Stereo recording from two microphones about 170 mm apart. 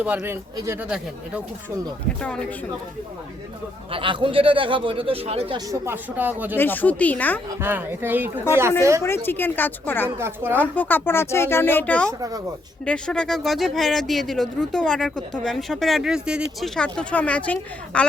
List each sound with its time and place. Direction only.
0.0 s speech: 10° right (ahead or behind)
3.9 s a man's voice: 30° right (ahead or behind)
5.5 s speech: 15° right (ahead or behind)
6.6 s speech: 10° left (ahead or behind)
7.6 s speech: 10° right (ahead or behind)
9.0 s speech: 15° left (ahead or behind)
10.2 s speech: 15° right (ahead or behind)
10.5 s speech: 10° left (ahead or behind)